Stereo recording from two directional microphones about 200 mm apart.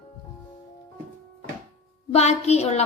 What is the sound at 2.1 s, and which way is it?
Speech, 30° left (ahead or behind).